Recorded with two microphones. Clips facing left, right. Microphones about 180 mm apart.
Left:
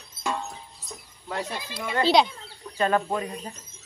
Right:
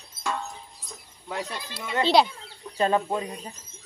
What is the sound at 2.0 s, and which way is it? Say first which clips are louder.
Speech: even; 5° right (ahead or behind).